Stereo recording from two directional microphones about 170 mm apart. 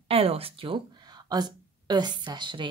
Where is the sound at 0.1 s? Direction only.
35° right (ahead or behind).